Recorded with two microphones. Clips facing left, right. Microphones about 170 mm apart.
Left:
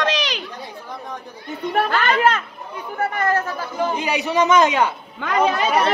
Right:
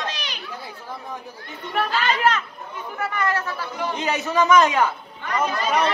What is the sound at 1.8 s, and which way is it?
Children playing, 55° left (ahead or behind).